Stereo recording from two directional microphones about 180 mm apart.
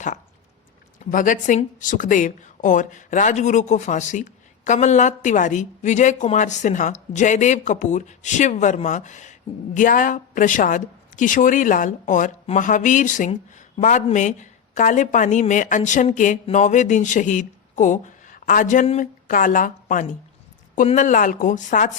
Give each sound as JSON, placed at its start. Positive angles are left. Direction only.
{"t": 0.9, "sound": "speech", "side_deg": 45}